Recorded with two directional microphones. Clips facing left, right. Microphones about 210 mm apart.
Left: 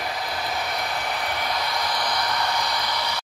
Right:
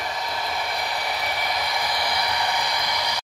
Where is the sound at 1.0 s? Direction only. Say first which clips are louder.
Even; 5° right (ahead or behind).